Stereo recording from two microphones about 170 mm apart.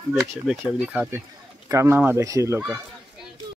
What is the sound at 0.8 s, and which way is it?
Speech, 10° right (ahead or behind).